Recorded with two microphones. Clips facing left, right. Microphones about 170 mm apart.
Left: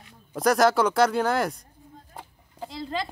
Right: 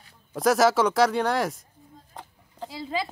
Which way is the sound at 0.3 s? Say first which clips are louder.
Even; centre (ahead or behind).